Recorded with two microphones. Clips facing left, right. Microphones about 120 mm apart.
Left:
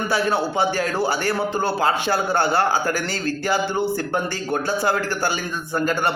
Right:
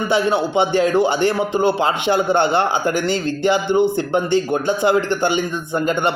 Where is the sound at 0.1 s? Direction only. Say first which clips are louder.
Right 5 dB; 20° right (ahead or behind).